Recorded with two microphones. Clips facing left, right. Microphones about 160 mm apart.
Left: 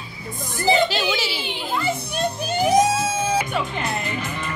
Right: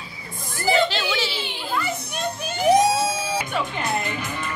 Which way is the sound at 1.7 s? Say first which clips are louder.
Left 2 dB; 30° left (ahead or behind).